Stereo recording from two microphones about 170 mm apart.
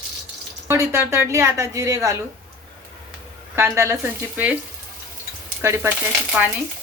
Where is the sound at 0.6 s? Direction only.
15° right (ahead or behind).